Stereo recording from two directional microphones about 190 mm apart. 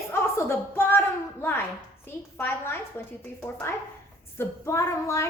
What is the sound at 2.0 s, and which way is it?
A woman's voice, 10° left (ahead or behind).